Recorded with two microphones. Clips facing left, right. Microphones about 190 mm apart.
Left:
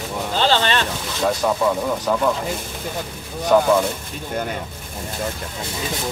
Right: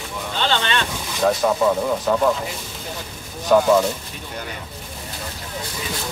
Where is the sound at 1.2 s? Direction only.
Centre (ahead or behind).